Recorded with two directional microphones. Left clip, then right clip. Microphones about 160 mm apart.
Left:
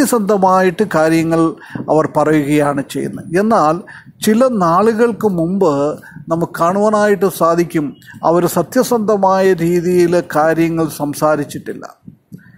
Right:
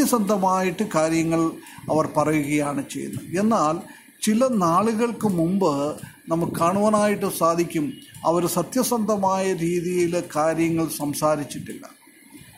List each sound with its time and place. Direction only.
0.0 s speech: 40° left (ahead or behind)